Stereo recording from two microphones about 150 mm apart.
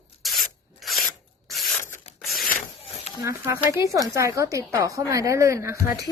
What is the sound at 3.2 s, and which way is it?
A woman's voice, 15° right (ahead or behind).